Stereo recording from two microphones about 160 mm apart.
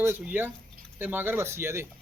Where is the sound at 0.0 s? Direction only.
15° right (ahead or behind).